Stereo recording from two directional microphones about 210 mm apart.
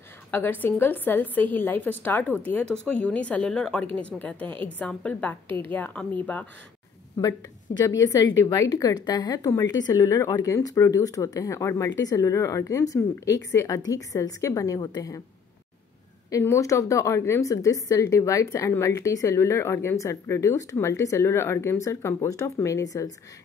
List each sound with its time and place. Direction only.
0.3 s a woman's voice: 10° left (ahead or behind)
8.0 s a woman's voice: 15° left (ahead or behind)
16.3 s a woman's voice: 15° left (ahead or behind)